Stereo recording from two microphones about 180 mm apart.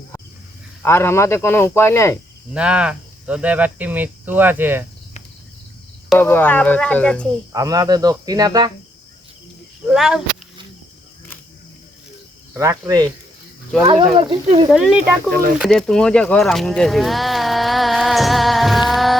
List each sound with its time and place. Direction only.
0.8 s speech: 15° left (ahead or behind)
2.5 s speech: 5° right (ahead or behind)
6.1 s speech: 10° left (ahead or behind)
7.5 s speech: 20° right (ahead or behind)
9.8 s speech: 5° right (ahead or behind)
12.5 s speech: 15° right (ahead or behind)
13.8 s speech: 30° right (ahead or behind)
14.7 s speech: 5° right (ahead or behind)
15.3 s speech: 55° right (ahead or behind)
15.5 s speech: centre (ahead or behind)